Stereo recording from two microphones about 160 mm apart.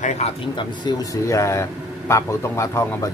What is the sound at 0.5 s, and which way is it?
Speech, 25° left (ahead or behind).